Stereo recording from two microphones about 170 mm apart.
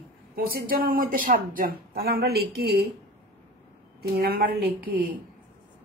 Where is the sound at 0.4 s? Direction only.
60° right (ahead or behind).